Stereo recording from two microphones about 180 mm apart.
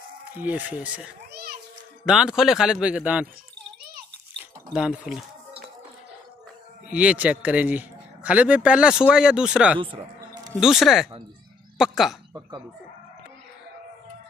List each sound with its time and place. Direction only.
0.4 s a man's voice: 10° right (ahead or behind)
1.3 s a sound: 60° right (ahead or behind)
2.0 s speech: 5° right (ahead or behind)
4.4 s a sound: 5° right (ahead or behind)
6.9 s a man's voice: 5° right (ahead or behind)
9.8 s basketball bounce: 30° right (ahead or behind)
10.6 s speech: centre (ahead or behind)
12.4 s speech: 20° right (ahead or behind)